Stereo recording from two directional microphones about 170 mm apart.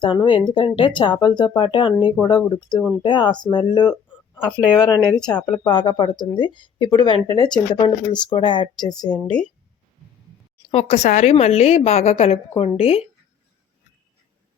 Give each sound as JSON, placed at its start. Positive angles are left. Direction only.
{"t": 0.0, "sound": "speech", "side_deg": 30}
{"t": 4.5, "sound": "speech", "side_deg": -5}
{"t": 5.1, "sound": "speech", "side_deg": 25}
{"t": 9.0, "sound": "speech", "side_deg": 5}
{"t": 10.7, "sound": "a woman's voice", "side_deg": 40}